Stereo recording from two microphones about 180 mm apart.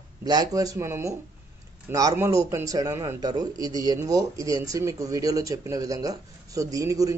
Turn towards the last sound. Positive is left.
turn(degrees=-20)  # may be behind; listen again after turning